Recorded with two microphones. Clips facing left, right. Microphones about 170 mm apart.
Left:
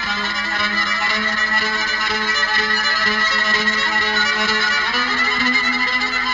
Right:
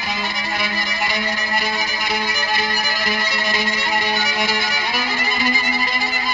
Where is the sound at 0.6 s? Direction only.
15° right (ahead or behind).